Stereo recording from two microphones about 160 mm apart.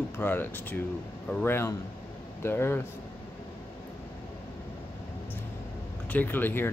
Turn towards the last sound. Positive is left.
turn(degrees=15)  # may be behind; listen again after turning